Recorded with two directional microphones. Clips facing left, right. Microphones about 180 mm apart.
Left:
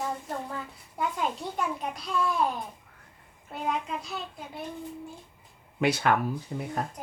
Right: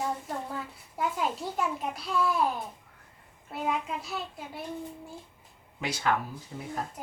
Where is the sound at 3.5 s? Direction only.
Centre (ahead or behind).